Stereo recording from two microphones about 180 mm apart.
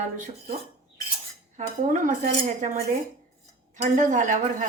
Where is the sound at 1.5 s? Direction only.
45° right (ahead or behind).